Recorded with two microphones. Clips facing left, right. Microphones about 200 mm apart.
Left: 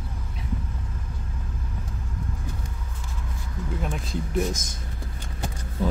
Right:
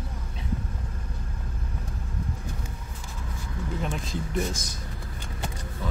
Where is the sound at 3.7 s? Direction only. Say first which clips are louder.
Left 1 dB; centre (ahead or behind).